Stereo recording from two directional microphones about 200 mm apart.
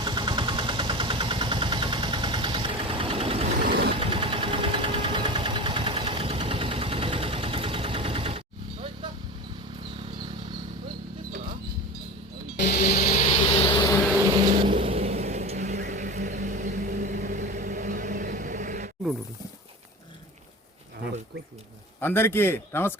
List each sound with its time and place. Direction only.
0.0 s vehicle: 20° right (ahead or behind)
3.6 s vehicle: 50° right (ahead or behind)
3.8 s engine: 25° right (ahead or behind)
10.0 s a sound: 25° right (ahead or behind)
12.5 s music: 35° left (ahead or behind)
12.8 s vehicle: 45° left (ahead or behind); by 13.9 s 20° left (ahead or behind)
14.5 s vehicle: 25° right (ahead or behind)
22.0 s speech: 10° left (ahead or behind)